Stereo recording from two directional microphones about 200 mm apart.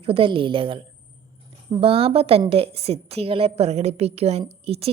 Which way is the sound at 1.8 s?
30° right (ahead or behind).